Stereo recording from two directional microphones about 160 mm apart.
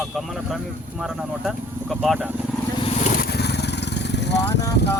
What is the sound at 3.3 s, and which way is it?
Vehicle, 90° left.